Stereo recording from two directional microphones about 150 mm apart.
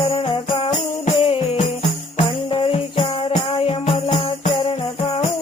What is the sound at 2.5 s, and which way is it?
Music, 40° left (ahead or behind).